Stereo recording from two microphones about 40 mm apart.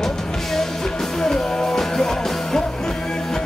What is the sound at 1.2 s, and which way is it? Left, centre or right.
Music, centre.